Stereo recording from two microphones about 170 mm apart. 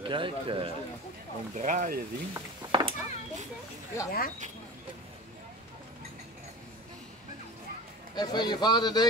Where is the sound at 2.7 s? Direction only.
30° right (ahead or behind).